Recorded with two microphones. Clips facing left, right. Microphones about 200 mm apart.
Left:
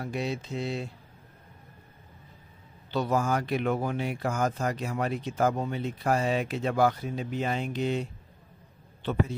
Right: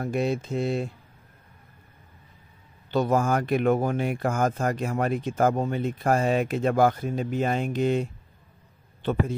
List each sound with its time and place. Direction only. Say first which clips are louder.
0.0 s speech: right 6 dB; 50° right (ahead or behind)
2.9 s speech: right 4 dB; 50° right (ahead or behind)